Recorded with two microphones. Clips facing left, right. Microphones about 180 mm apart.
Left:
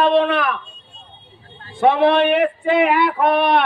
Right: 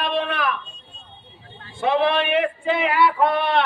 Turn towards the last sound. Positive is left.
turn(degrees=65)  # may be behind; listen again after turning